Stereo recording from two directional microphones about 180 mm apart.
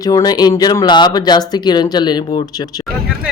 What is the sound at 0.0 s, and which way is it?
Speech, 20° left (ahead or behind).